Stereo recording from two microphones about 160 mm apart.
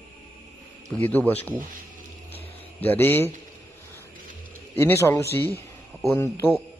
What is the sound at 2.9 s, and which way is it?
Speech, 15° left (ahead or behind).